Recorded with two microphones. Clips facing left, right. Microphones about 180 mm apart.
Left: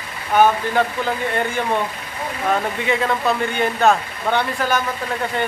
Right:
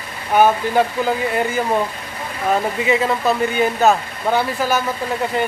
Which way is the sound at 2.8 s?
5° right (ahead or behind).